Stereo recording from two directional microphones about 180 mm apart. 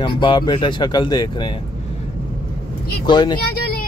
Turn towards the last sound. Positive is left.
turn(degrees=55)  # may be behind; listen again after turning